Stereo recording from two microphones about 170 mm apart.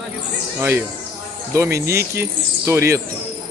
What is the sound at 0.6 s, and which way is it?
Speech, 10° right (ahead or behind).